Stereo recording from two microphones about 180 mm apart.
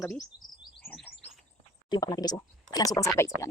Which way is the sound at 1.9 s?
20° left (ahead or behind).